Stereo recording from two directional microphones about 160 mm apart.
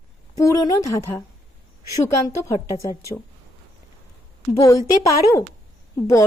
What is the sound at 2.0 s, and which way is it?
Speech, 20° left (ahead or behind).